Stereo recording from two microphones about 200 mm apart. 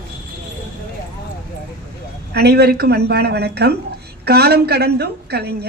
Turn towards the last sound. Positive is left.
turn(degrees=-55)  # may be behind; listen again after turning